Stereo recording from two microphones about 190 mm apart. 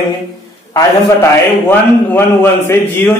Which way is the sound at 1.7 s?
10° left (ahead or behind).